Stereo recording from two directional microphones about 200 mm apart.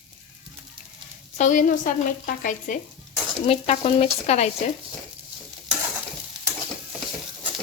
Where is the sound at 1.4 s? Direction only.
40° left (ahead or behind).